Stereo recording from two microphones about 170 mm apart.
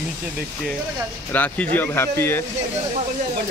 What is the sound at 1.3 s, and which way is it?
Speech, 10° left (ahead or behind).